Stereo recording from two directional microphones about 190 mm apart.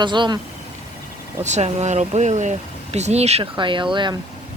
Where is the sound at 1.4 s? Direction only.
35° right (ahead or behind).